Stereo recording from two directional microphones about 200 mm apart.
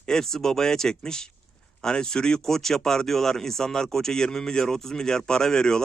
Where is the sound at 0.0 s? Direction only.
5° left (ahead or behind).